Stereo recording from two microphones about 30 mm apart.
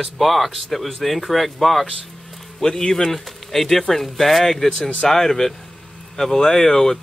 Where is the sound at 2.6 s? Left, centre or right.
Left.